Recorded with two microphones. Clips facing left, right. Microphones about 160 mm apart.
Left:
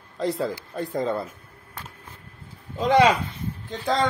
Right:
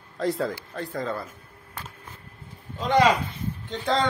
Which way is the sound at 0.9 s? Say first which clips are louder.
Left 5 dB; 20° left (ahead or behind).